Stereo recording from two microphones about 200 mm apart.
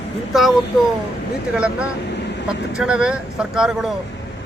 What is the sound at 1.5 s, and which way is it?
Speech, 5° right (ahead or behind).